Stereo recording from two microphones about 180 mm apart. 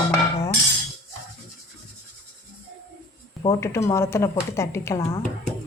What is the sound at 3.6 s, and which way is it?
A woman's voice, 15° left (ahead or behind).